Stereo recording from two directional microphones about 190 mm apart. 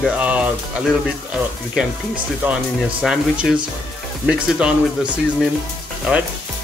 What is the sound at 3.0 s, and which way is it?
Speech, 5° right (ahead or behind).